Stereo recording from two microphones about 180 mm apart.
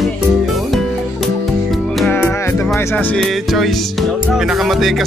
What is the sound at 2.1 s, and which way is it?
Music, 10° left (ahead or behind).